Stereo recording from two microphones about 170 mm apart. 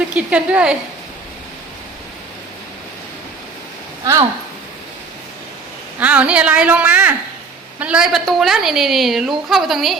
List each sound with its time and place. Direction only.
0.1 s a woman's voice: 5° right (ahead or behind)
4.0 s speech: 20° right (ahead or behind)
6.0 s a woman's voice: 5° right (ahead or behind)